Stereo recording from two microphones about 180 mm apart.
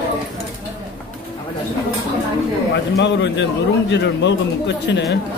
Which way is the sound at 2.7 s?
80° left.